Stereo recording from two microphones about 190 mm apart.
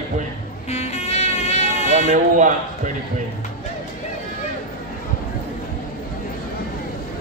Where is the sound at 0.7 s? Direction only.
35° left (ahead or behind).